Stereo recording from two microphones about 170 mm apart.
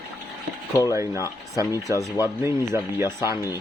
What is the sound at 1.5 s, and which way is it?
Speech, 20° right (ahead or behind).